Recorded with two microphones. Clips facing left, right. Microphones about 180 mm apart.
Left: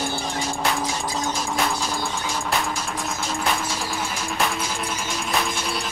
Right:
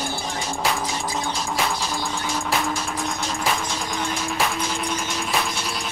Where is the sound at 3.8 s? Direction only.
5° left (ahead or behind).